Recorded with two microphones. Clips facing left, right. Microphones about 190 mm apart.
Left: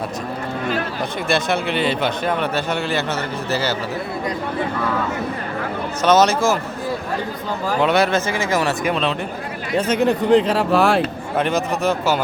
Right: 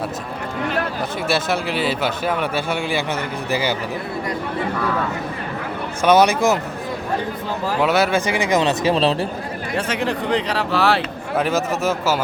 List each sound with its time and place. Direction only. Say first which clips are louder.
1.3 s a man's voice: left 2 dB; 5° right (ahead or behind)
6.0 s a man's voice: right 1 dB; 10° right (ahead or behind)
7.7 s speech: left 1 dB; 5° right (ahead or behind)
8.3 s speech: right 2 dB; 15° right (ahead or behind)
10.1 s speech: left 8 dB; centre (ahead or behind)
10.4 s speech: left 3 dB; 45° left (ahead or behind)
11.3 s speech: even; 5° right (ahead or behind)